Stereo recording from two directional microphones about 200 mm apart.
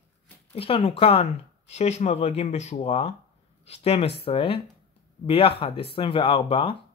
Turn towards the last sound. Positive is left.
turn(degrees=30)  # may be behind; listen again after turning